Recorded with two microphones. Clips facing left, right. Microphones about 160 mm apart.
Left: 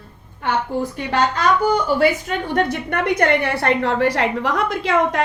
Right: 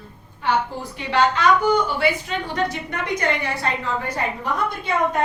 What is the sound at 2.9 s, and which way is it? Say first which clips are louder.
A woman's voice: left 6 dB; 65° left (ahead or behind).